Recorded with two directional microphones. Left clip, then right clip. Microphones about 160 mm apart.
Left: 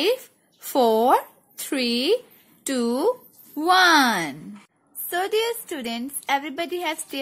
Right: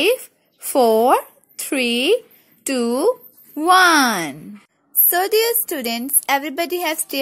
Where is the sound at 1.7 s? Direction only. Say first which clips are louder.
Right 5 dB; 35° right (ahead or behind).